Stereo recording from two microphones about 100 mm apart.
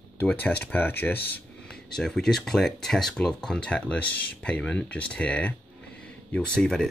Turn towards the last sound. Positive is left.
turn(degrees=5)  # may be behind; listen again after turning